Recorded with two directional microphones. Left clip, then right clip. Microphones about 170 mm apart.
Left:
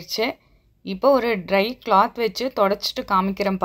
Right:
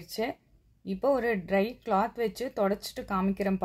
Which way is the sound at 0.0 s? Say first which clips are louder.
Left 9 dB; 15° left (ahead or behind).